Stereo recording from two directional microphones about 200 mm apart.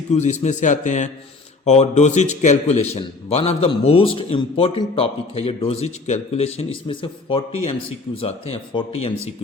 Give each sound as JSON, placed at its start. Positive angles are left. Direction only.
{"t": 0.1, "sound": "a man's voice", "side_deg": 35}